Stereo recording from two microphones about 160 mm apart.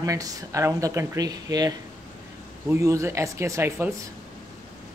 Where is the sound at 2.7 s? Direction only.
20° right (ahead or behind).